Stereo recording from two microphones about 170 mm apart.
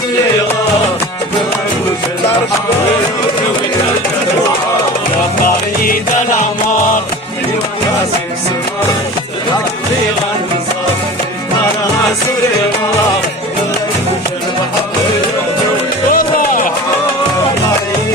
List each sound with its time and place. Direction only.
16.1 s music: 55° left (ahead or behind)